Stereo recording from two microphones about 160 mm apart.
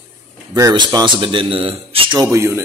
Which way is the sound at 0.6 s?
20° right (ahead or behind).